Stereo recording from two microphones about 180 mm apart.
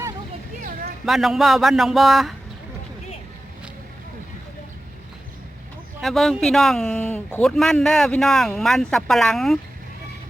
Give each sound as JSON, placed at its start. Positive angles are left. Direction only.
{"t": 0.6, "sound": "a sound", "side_deg": -50}
{"t": 1.0, "sound": "speech", "side_deg": 0}
{"t": 6.0, "sound": "speech", "side_deg": 0}